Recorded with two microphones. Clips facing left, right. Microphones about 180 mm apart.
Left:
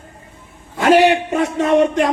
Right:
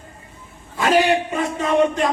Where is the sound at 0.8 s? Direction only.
70° left (ahead or behind).